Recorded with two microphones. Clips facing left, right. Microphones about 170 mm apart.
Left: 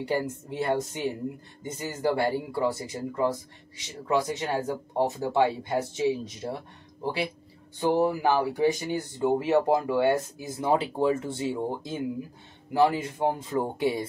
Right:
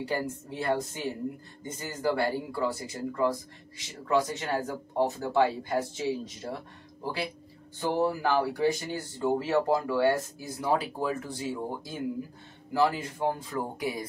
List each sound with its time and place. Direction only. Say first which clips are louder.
0.1 s speech: left 6 dB; 20° left (ahead or behind)